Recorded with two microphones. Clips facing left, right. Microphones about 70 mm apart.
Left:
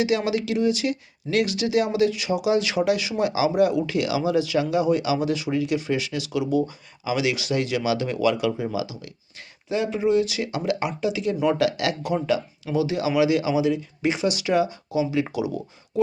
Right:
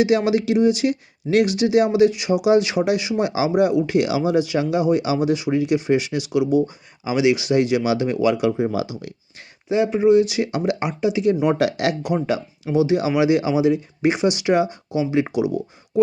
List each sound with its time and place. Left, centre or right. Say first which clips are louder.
0.3 s speech: right 5 dB; right
3.5 s speech: right 3 dB; centre
6.6 s speech: right 4 dB; right
7.2 s speech: right 8 dB; centre
8.4 s speech: right 5 dB; right